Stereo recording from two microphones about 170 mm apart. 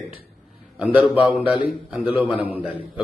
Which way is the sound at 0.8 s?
10° right (ahead or behind).